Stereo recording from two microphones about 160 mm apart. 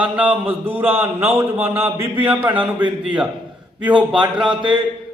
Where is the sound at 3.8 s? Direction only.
30° right (ahead or behind).